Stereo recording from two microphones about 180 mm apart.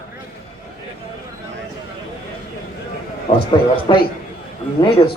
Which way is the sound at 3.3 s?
25° left (ahead or behind).